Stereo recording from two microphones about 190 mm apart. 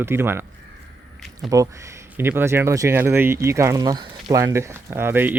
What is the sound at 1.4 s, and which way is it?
Speech, 20° right (ahead or behind).